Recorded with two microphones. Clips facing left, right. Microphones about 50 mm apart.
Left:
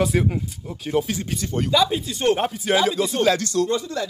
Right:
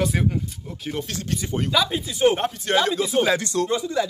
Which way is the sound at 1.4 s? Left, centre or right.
Centre.